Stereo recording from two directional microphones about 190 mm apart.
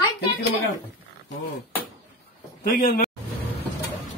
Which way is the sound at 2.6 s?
45° left (ahead or behind).